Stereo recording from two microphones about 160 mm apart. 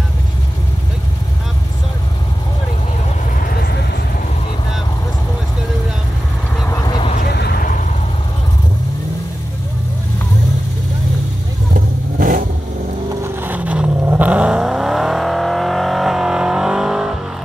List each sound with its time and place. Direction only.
3.3 s vehicle: 65° left (ahead or behind)
6.7 s vehicle: 25° left (ahead or behind)
7.2 s vehicle: 85° left; by 7.8 s 65° left (ahead or behind)
11.7 s vehicle: 60° right (ahead or behind)
13.2 s vehicle: 10° right (ahead or behind)